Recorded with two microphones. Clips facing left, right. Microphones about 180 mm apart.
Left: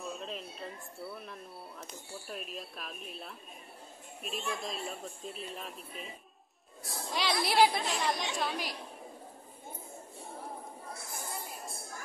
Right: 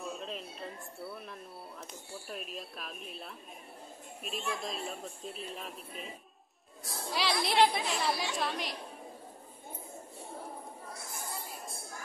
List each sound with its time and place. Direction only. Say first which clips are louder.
0.0 s speech: even; centre (ahead or behind)